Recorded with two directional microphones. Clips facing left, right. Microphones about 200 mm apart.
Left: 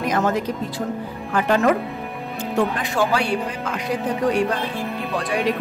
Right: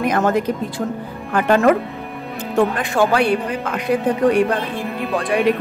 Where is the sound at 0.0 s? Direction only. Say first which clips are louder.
Right 4 dB; 55° right (ahead or behind).